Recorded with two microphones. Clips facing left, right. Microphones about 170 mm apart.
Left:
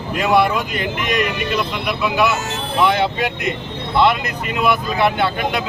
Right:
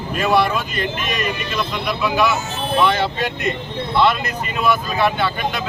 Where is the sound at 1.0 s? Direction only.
70° left (ahead or behind).